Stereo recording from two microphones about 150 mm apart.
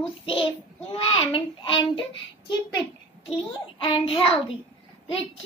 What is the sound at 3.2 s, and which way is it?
A child's voice, 35° left (ahead or behind).